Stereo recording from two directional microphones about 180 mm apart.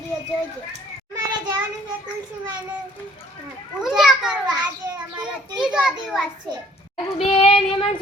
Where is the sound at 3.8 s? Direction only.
5° right (ahead or behind).